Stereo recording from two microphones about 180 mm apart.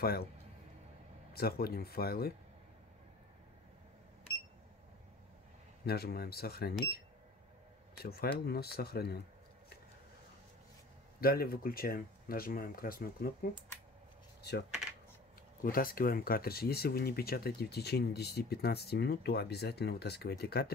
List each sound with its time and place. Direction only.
0.0 s speech: 60° left (ahead or behind)
1.3 s speech: 60° left (ahead or behind)
5.9 s speech: 60° left (ahead or behind)
8.0 s speech: 60° left (ahead or behind)
11.1 s speech: 55° left (ahead or behind)
15.6 s speech: 50° left (ahead or behind)